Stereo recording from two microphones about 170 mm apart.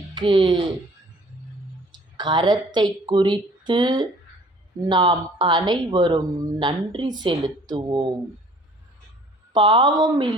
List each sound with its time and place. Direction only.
0.1 s a child's voice: 30° right (ahead or behind)
1.9 s a woman's voice: 25° right (ahead or behind)
9.5 s speech: 30° right (ahead or behind)